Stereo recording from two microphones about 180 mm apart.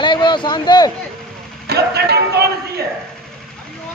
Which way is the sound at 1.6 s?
65° right (ahead or behind).